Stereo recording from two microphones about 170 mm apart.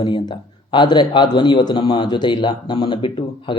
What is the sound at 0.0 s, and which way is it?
A man's voice, 30° left (ahead or behind).